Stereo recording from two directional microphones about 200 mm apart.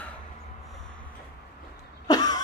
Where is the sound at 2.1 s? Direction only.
20° left (ahead or behind).